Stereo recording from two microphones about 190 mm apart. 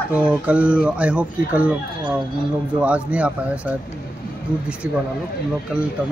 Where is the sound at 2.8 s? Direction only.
5° right (ahead or behind).